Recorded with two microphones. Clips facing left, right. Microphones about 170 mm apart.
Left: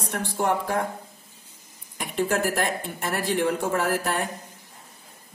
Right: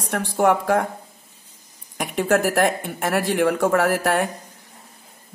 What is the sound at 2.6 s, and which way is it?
A man's voice, 65° right (ahead or behind).